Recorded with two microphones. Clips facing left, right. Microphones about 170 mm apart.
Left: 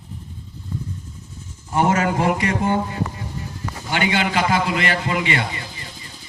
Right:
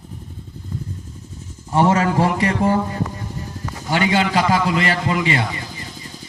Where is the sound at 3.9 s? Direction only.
35° right (ahead or behind).